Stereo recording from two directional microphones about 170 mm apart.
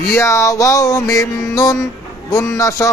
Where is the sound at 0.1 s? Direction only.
15° left (ahead or behind).